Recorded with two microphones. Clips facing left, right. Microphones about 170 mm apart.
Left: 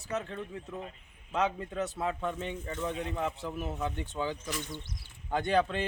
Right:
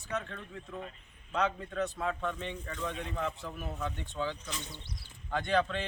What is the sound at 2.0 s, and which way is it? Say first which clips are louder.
A man's voice: left 2 dB; 25° left (ahead or behind).